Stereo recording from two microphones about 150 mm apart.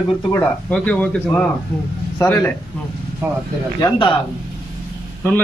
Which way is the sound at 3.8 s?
35° left (ahead or behind).